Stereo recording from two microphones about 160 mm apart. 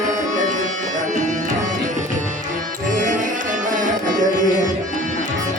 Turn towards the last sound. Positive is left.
turn(degrees=-55)  # may be behind; listen again after turning